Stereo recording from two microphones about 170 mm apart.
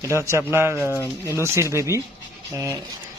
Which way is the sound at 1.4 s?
15° right (ahead or behind).